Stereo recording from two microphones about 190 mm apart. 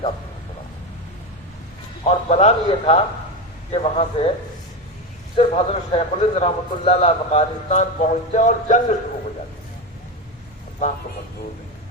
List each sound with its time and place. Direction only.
2.0 s a man's voice: 35° left (ahead or behind)
5.4 s a man's voice: 35° left (ahead or behind)